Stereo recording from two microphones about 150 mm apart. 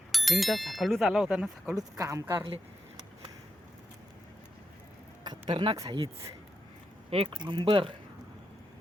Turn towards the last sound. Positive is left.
turn(degrees=-30)  # may be behind; listen again after turning